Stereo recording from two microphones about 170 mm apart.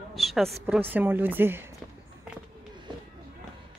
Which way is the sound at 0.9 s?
10° right (ahead or behind).